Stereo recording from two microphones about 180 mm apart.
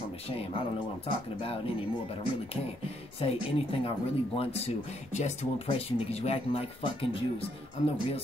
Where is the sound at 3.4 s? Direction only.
30° left (ahead or behind).